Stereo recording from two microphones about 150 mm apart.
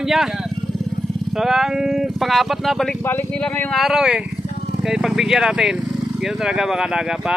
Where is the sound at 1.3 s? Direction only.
Centre (ahead or behind).